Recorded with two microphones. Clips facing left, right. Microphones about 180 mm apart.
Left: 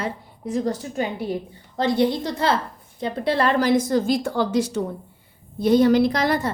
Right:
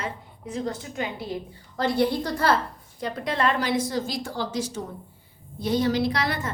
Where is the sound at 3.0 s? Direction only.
30° left (ahead or behind).